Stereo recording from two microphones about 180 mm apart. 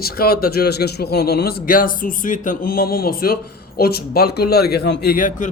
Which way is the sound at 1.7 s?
50° left (ahead or behind).